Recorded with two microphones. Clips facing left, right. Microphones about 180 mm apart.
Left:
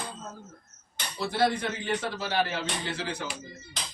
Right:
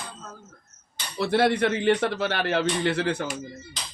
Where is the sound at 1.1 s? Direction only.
65° right (ahead or behind).